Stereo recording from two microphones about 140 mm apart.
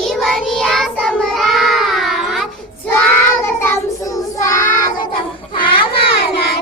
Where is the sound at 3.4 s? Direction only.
15° left (ahead or behind).